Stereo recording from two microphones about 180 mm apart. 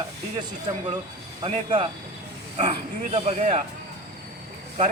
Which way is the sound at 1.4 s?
30° right (ahead or behind).